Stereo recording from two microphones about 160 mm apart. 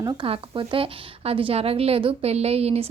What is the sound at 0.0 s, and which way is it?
A woman's voice, 25° right (ahead or behind).